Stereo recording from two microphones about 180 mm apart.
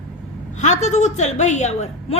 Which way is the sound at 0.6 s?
40° left (ahead or behind).